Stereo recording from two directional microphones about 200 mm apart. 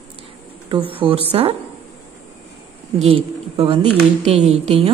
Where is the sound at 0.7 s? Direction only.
25° right (ahead or behind).